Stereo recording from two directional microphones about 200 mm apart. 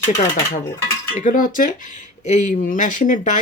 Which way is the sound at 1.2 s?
40° left (ahead or behind).